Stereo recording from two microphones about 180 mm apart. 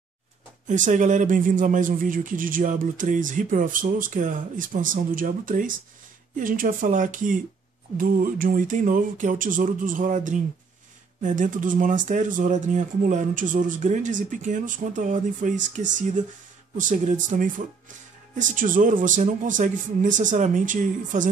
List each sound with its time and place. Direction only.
0.7 s speech: 45° right (ahead or behind)